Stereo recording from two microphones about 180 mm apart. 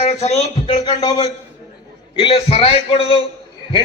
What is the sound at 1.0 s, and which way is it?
A man's voice, 25° left (ahead or behind).